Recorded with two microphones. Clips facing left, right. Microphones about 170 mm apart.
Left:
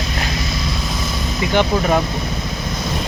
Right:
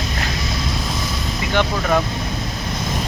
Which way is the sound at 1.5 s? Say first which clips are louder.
Left 2 dB; 15° left (ahead or behind).